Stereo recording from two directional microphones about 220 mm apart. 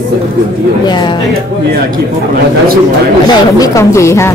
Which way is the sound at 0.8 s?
20° left (ahead or behind).